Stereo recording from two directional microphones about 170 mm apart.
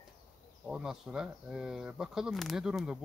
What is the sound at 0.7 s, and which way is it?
Speech, 5° right (ahead or behind).